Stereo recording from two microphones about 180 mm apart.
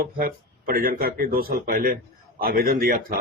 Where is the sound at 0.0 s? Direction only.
50° right (ahead or behind).